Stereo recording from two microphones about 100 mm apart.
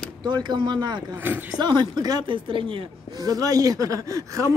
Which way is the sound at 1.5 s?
45° right (ahead or behind).